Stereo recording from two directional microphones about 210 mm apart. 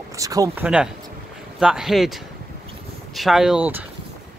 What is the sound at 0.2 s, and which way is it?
Speech, 15° right (ahead or behind).